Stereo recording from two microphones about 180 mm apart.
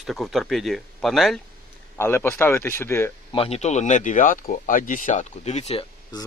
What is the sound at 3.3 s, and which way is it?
Speech, 35° left (ahead or behind).